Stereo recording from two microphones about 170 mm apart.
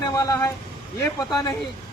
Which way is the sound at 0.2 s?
20° left (ahead or behind).